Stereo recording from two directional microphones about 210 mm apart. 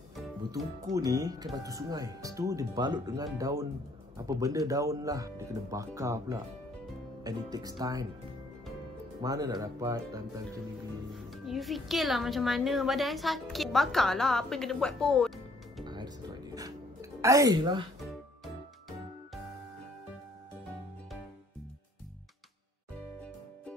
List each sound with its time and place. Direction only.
0.8 s speech: 15° right (ahead or behind)
9.2 s speech: 15° right (ahead or behind)
11.1 s a woman's voice: centre (ahead or behind)
15.8 s music: 20° right (ahead or behind)